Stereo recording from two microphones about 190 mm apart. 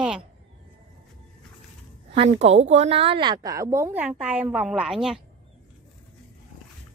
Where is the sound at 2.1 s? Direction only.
30° right (ahead or behind); by 5.2 s 5° right (ahead or behind).